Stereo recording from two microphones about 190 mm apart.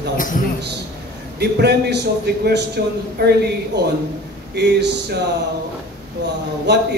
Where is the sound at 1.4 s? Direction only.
60° right (ahead or behind).